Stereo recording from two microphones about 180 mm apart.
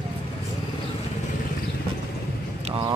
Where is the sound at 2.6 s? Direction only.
25° right (ahead or behind).